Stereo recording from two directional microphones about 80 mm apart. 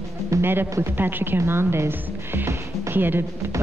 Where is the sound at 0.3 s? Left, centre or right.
Right.